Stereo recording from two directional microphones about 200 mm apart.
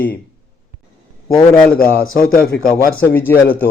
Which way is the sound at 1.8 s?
45° left (ahead or behind).